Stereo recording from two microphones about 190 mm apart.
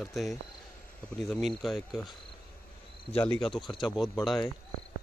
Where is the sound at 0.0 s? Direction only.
Centre (ahead or behind).